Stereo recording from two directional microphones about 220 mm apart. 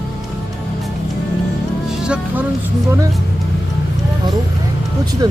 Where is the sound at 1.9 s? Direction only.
5° right (ahead or behind).